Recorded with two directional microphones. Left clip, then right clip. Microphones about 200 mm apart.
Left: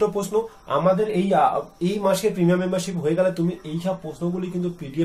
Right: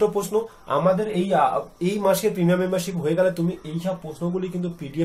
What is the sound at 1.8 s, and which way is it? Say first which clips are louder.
Speech: even; 20° right (ahead or behind).